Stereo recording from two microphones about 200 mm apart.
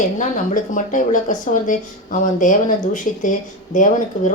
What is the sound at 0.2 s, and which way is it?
Speech, 40° left (ahead or behind).